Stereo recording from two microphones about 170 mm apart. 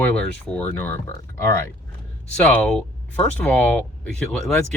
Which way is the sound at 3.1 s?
10° left (ahead or behind).